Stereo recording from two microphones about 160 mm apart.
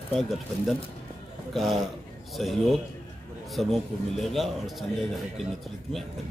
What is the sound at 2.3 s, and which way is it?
Speech, centre (ahead or behind).